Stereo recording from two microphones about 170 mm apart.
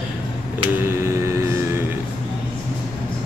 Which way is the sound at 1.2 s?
15° right (ahead or behind).